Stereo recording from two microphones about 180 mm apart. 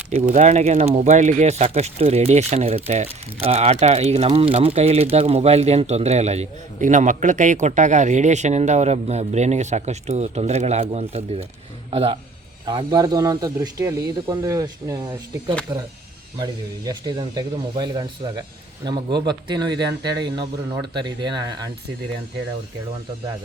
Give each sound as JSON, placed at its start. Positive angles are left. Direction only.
{"t": 0.1, "sound": "a man's voice", "side_deg": -45}